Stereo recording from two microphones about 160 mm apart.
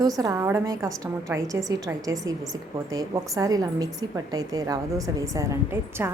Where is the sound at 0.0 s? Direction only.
25° right (ahead or behind).